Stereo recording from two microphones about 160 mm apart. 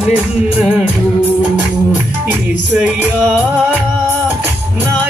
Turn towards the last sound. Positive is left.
turn(degrees=-10)  # may be behind; listen again after turning